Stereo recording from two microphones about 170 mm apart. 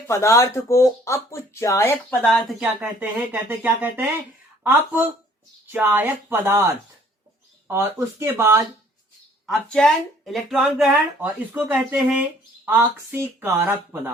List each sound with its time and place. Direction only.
0.1 s speech: 15° left (ahead or behind)
2.3 s speech: centre (ahead or behind)
9.5 s speech: 5° left (ahead or behind); by 14.1 s 10° right (ahead or behind)